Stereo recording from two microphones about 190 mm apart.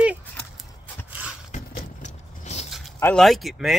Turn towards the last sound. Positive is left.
turn(degrees=0)  # may be behind; listen again after turning